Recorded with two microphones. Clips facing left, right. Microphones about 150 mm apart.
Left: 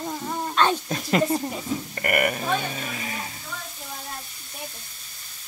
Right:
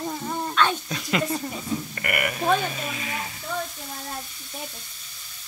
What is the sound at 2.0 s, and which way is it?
Speech, 40° left (ahead or behind).